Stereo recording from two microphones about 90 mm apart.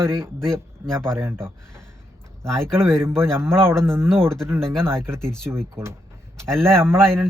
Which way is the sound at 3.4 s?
25° right (ahead or behind).